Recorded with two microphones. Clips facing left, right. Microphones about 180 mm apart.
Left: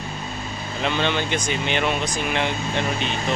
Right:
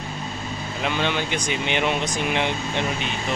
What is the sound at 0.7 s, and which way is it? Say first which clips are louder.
Speech: left 2 dB; 10° right (ahead or behind).